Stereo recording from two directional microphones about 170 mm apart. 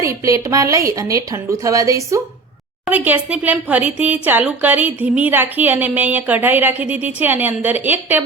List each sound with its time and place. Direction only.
0.0 s a woman's voice: 20° right (ahead or behind)